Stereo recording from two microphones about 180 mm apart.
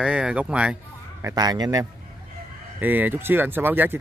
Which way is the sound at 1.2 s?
15° right (ahead or behind).